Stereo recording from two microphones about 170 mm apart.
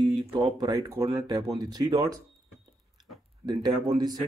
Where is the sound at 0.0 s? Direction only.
30° right (ahead or behind).